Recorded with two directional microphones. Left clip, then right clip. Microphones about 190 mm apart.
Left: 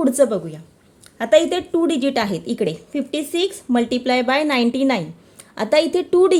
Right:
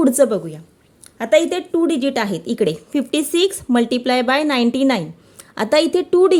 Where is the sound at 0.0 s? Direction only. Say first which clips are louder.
Right 2 dB; 20° right (ahead or behind).